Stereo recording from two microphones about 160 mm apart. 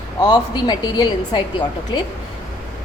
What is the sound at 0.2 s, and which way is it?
A woman's voice, 25° left (ahead or behind).